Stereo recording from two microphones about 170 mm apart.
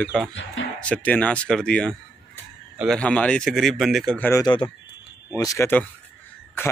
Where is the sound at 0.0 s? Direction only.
5° left (ahead or behind).